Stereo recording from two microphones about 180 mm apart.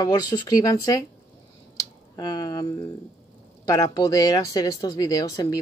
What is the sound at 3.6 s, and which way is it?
Speech, 20° left (ahead or behind).